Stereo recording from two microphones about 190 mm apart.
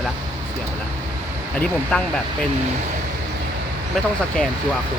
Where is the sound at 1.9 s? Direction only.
5° left (ahead or behind).